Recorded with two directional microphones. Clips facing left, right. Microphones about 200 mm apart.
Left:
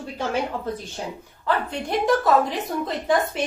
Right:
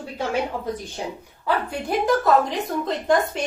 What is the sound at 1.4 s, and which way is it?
A woman's voice, 10° right (ahead or behind).